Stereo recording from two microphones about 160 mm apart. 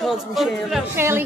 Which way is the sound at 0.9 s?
15° right (ahead or behind).